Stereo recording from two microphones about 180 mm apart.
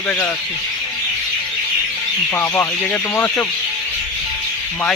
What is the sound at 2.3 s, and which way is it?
Speech, 10° left (ahead or behind).